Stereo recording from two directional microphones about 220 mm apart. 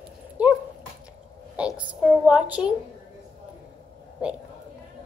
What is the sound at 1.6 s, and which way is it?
A woman's voice, 5° right (ahead or behind).